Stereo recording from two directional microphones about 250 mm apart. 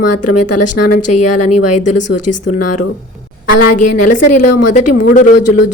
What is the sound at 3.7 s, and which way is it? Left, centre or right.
A woman's voice, left.